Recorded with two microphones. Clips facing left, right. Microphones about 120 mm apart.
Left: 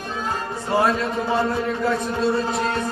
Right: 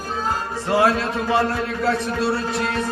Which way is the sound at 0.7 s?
90° right.